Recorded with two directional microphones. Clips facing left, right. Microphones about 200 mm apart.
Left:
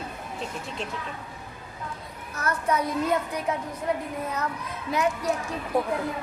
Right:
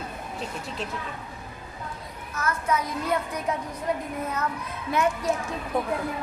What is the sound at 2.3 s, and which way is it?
Speech, 35° left (ahead or behind).